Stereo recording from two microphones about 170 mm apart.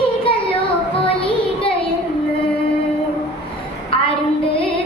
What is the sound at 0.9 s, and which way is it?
Child singing, 35° left (ahead or behind).